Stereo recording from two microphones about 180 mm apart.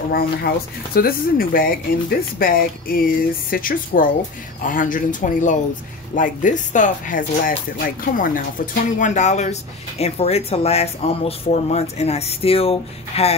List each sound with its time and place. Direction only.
0.1 s speech: 60° left (ahead or behind); by 13.4 s 35° left (ahead or behind)